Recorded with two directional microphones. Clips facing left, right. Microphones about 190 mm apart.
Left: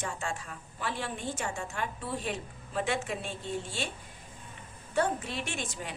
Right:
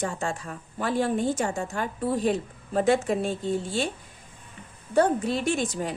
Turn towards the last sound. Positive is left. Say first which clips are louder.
# right 11 dB
turn(degrees=-40)  # may be behind; listen again after turning